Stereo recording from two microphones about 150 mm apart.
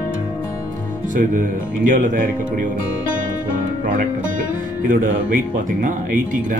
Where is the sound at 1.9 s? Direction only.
60° right (ahead or behind).